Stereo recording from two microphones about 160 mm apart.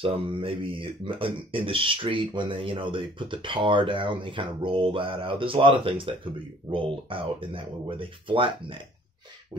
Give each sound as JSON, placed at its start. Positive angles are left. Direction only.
{"t": 0.0, "sound": "speech", "side_deg": -35}